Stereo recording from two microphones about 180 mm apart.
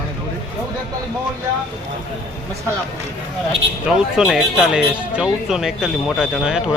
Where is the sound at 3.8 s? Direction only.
5° right (ahead or behind).